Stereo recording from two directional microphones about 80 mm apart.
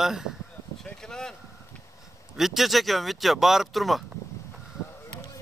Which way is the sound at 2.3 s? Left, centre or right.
Centre.